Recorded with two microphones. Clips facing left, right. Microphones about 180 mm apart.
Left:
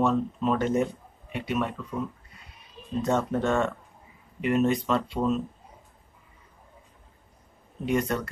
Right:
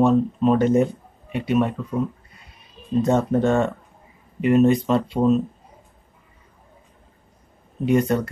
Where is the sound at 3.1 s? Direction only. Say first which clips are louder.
Right 4 dB; 35° right (ahead or behind).